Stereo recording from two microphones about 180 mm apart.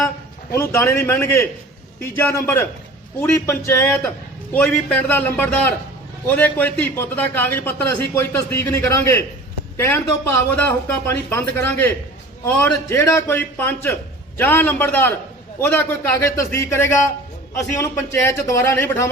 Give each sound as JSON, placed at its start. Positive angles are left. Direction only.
{"t": 0.5, "sound": "a man's voice", "side_deg": 10}